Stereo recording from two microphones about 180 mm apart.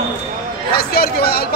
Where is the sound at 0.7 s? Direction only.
60° left (ahead or behind).